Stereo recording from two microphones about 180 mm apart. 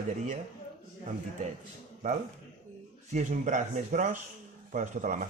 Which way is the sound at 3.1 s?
40° right (ahead or behind).